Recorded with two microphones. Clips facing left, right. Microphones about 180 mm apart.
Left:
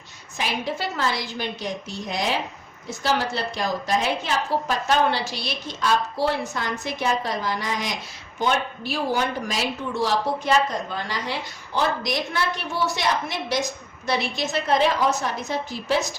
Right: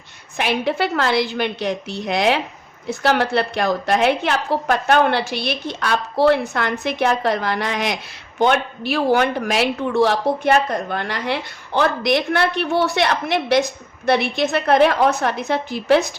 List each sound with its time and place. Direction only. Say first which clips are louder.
0.3 s speech: right 7 dB; 65° right (ahead or behind)